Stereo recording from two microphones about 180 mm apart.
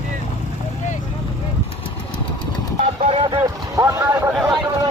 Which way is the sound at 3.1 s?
30° right (ahead or behind).